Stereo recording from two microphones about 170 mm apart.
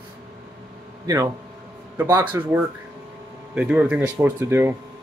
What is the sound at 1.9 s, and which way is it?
Speech, 15° right (ahead or behind).